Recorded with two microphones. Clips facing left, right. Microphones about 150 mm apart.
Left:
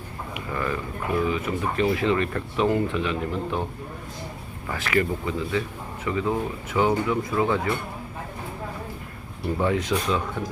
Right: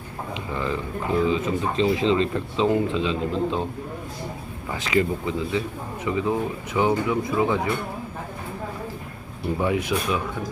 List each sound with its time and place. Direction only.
0.5 s speech: 20° right (ahead or behind)
4.7 s speech: 20° right (ahead or behind)
9.6 s speech: 15° right (ahead or behind)